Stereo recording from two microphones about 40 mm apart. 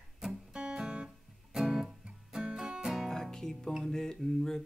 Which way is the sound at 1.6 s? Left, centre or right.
Centre.